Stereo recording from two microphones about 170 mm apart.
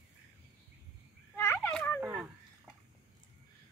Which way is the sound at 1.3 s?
15° left (ahead or behind).